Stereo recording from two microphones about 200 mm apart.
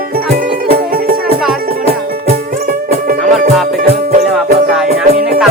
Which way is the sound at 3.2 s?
Centre (ahead or behind).